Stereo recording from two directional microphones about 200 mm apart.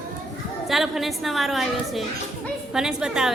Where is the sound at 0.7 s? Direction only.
Centre (ahead or behind).